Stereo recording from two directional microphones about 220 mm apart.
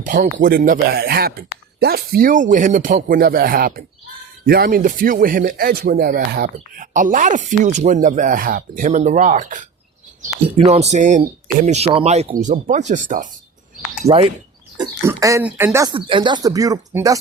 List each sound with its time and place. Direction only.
0.0 s speech: 40° right (ahead or behind)
10.7 s speech: 30° right (ahead or behind)
14.0 s speech: 25° right (ahead or behind)
14.8 s speech: 15° right (ahead or behind)